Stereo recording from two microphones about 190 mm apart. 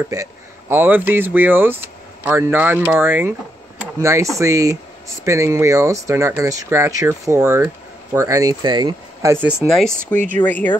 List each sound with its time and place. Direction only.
0.1 s speech: 15° right (ahead or behind)
9.6 s speech: centre (ahead or behind)